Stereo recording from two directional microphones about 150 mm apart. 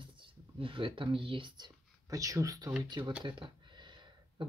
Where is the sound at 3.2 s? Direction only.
35° right (ahead or behind).